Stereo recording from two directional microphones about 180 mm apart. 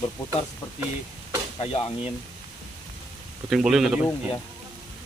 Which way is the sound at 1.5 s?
30° left (ahead or behind).